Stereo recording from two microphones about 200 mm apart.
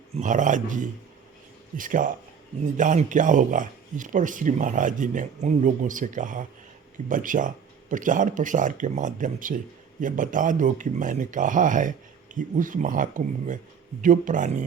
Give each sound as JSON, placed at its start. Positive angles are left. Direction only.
{"t": 0.1, "sound": "speech", "side_deg": -40}